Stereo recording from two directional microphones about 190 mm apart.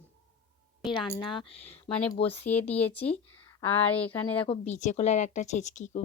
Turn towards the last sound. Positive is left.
turn(degrees=40)  # may be behind; listen again after turning